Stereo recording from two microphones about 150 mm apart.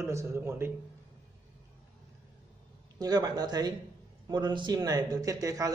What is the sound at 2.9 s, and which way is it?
Speech, 25° right (ahead or behind).